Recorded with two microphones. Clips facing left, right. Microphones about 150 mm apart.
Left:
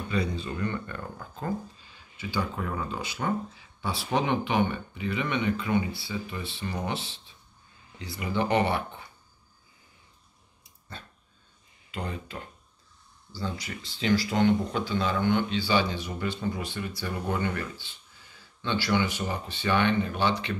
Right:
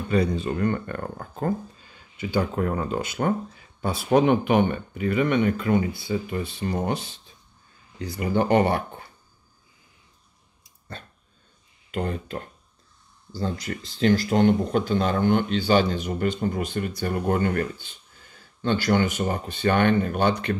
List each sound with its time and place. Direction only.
0.1 s speech: 50° right (ahead or behind)
11.9 s speech: 50° right (ahead or behind)